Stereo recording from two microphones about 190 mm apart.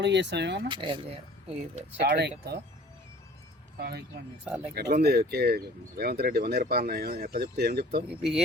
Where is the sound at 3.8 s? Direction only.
55° right (ahead or behind).